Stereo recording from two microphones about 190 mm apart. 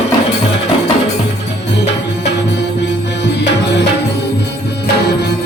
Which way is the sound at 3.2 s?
65° left (ahead or behind).